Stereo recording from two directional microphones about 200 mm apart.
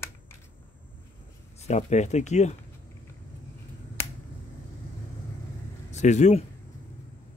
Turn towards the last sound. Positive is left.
turn(degrees=35)  # may be behind; listen again after turning